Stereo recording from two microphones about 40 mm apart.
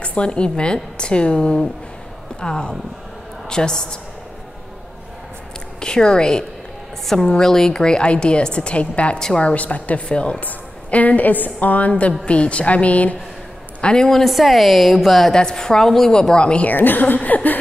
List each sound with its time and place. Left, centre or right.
0.0 s a woman's voice: left
5.8 s a woman's voice: centre
7.7 s a woman's voice: centre; by 10.0 s left
10.0 s a woman's voice: left
10.4 s a woman's voice: left
12.3 s a woman's voice: left
13.9 s a woman's voice: centre
14.2 s a woman's voice: centre
15.3 s a woman's voice: centre
16.1 s a woman's voice: centre
16.6 s a woman's voice: left